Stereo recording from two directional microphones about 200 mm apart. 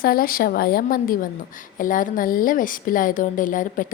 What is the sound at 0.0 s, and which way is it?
A woman's voice, 45° left (ahead or behind).